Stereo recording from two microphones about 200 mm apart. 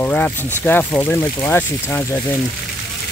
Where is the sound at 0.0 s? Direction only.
10° left (ahead or behind).